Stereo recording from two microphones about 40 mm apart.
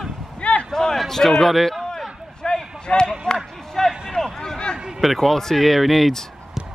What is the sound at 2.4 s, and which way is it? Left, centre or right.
Basketball bounce, centre.